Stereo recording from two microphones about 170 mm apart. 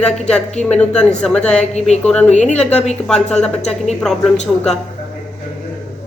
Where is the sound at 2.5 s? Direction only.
5° left (ahead or behind).